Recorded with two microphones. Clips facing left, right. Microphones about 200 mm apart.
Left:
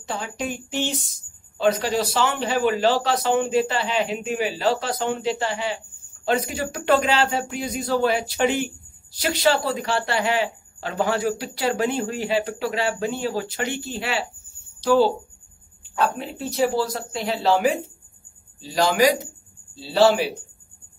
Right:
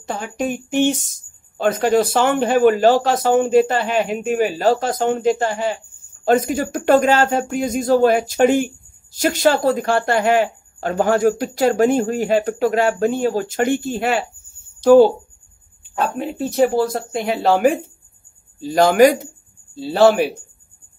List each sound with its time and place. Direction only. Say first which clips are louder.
0.0 s speech: right 5 dB; 50° right (ahead or behind)